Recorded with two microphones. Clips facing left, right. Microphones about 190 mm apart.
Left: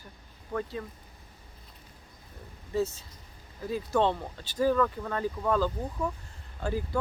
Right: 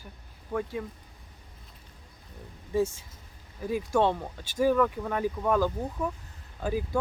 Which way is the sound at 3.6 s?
15° right (ahead or behind).